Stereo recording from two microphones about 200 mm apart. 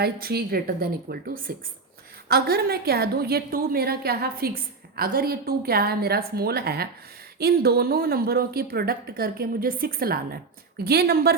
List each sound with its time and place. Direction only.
0.0 s a woman's voice: 50° right (ahead or behind)